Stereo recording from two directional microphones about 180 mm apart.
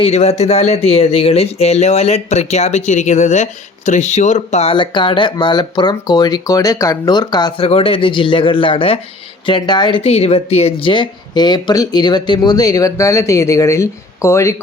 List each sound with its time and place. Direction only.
0.0 s speech: 35° left (ahead or behind); by 14.5 s 15° left (ahead or behind)